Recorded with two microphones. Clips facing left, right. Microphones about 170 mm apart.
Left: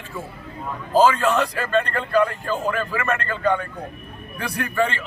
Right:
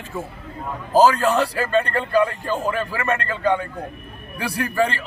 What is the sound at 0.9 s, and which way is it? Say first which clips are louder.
Speech: right 1 dB; 40° right (ahead or behind).